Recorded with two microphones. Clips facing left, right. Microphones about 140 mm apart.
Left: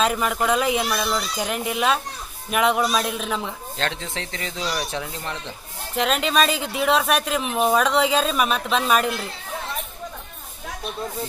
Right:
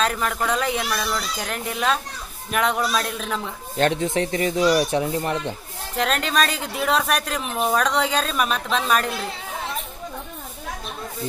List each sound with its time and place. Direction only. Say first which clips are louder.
0.0 s speech: left 2 dB; 10° left (ahead or behind)
3.7 s speech: right 10 dB; 15° right (ahead or behind)
5.9 s a woman's voice: left 1 dB; centre (ahead or behind)